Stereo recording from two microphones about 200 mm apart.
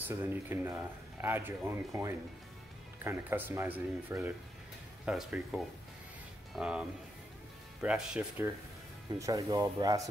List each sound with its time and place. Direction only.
0.1 s speech: 10° right (ahead or behind)
9.2 s speech: 15° right (ahead or behind)